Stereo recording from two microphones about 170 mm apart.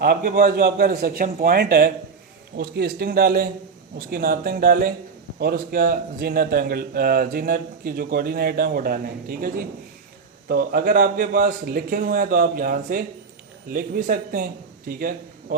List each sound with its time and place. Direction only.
0.0 s a man's voice: 60° right (ahead or behind)
10.5 s a man's voice: 55° right (ahead or behind)